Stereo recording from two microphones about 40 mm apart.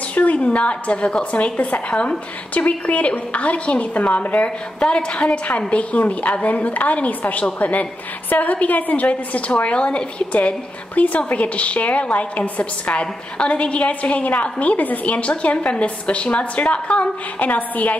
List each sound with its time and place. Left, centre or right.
0.1 s a woman's voice: left
4.7 s a woman's voice: left
11.0 s a woman's voice: left
17.5 s a woman's voice: left